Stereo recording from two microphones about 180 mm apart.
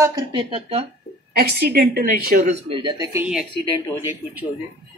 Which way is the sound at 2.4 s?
35° right (ahead or behind).